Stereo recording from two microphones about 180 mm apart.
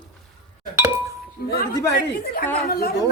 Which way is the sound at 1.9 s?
60° left (ahead or behind).